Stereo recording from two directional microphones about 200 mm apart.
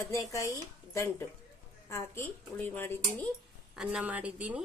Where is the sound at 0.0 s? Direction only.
15° left (ahead or behind).